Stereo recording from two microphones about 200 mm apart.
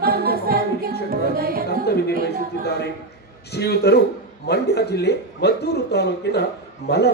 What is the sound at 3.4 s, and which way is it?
A man's voice, 55° left (ahead or behind).